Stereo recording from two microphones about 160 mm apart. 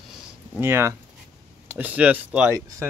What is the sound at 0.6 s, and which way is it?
Speech, 15° right (ahead or behind).